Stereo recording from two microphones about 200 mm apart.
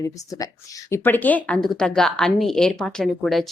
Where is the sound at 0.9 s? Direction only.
10° left (ahead or behind).